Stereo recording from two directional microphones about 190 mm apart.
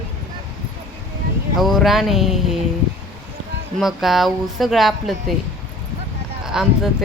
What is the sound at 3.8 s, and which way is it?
Speech, centre (ahead or behind).